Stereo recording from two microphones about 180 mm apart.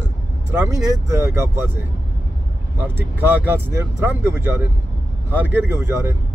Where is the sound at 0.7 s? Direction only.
15° right (ahead or behind).